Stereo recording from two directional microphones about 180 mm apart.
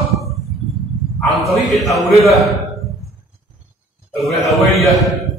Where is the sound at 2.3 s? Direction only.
Centre (ahead or behind).